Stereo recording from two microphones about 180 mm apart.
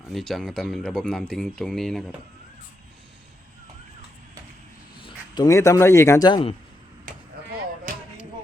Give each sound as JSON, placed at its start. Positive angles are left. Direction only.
{"t": 0.1, "sound": "speech", "side_deg": 0}
{"t": 4.9, "sound": "a man's voice", "side_deg": 25}